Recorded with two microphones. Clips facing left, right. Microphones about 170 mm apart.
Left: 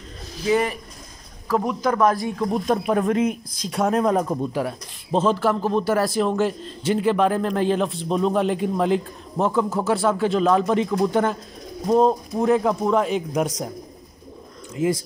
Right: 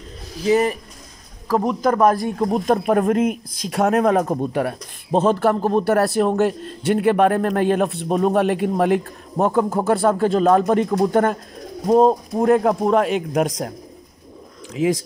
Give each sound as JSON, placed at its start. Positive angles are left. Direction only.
{"t": 0.5, "sound": "speech", "side_deg": -40}
{"t": 4.3, "sound": "a man's voice", "side_deg": -60}
{"t": 11.9, "sound": "speech", "side_deg": -40}
{"t": 12.4, "sound": "a man's voice", "side_deg": -55}